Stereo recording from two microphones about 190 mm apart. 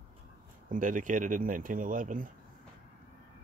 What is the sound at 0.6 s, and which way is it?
Speech, 45° right (ahead or behind).